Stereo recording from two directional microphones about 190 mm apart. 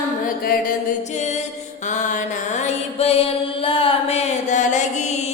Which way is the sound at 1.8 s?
40° left (ahead or behind).